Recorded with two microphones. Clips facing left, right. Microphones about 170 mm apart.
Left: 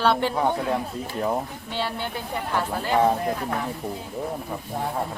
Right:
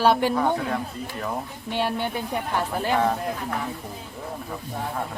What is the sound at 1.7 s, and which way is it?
Speech, 15° right (ahead or behind).